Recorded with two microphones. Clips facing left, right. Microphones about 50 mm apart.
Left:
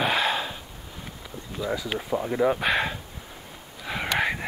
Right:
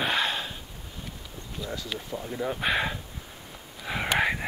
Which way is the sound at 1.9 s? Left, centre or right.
Left.